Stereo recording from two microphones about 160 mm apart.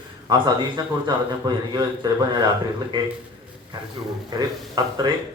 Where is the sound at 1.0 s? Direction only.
25° right (ahead or behind).